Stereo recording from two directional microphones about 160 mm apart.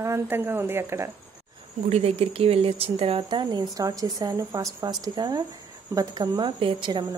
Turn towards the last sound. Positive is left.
turn(degrees=-30)  # may be behind; listen again after turning